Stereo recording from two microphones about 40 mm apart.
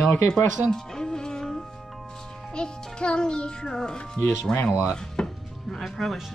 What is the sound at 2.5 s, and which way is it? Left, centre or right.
A child's voice, left.